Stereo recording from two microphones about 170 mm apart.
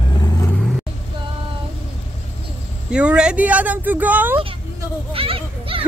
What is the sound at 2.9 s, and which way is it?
Speech, 5° right (ahead or behind).